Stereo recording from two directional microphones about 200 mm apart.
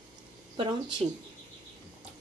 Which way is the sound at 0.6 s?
20° right (ahead or behind).